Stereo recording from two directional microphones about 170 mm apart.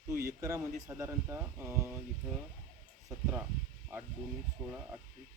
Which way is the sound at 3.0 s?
10° right (ahead or behind).